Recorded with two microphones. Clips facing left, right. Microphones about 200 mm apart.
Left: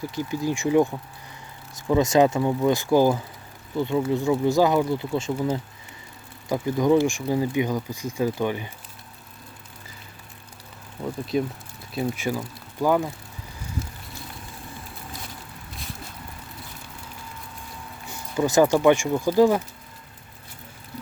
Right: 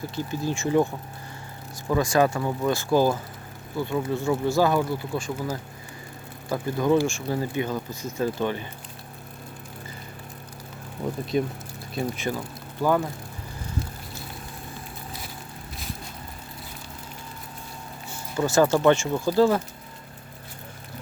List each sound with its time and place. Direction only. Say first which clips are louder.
0.2 s speech: left 2 dB; 15° left (ahead or behind)
1.9 s speech: left 3 dB; 20° left (ahead or behind)
11.3 s speech: left 1 dB; centre (ahead or behind)
18.1 s speech: left 2 dB; 15° left (ahead or behind)